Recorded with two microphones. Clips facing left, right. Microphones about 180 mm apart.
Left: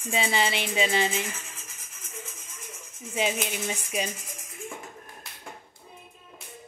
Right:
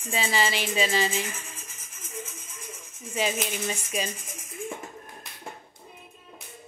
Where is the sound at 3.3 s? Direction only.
5° left (ahead or behind).